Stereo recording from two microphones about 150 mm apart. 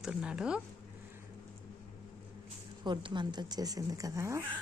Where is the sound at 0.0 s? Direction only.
5° right (ahead or behind).